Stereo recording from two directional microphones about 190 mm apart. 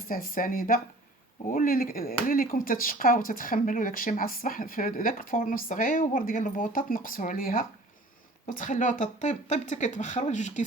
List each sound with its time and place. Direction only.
0.1 s speech: 50° left (ahead or behind)